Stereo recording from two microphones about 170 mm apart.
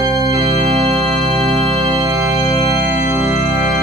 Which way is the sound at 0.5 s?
35° right (ahead or behind).